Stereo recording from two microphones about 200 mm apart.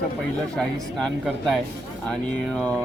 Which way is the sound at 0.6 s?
Centre (ahead or behind).